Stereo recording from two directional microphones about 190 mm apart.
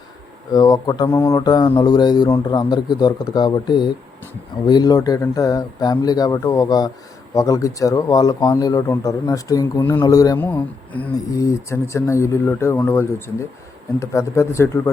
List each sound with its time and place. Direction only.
0.5 s mantra: 20° left (ahead or behind)
7.3 s speech: 15° left (ahead or behind)